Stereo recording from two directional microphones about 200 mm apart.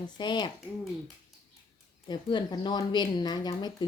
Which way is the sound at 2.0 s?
20° left (ahead or behind).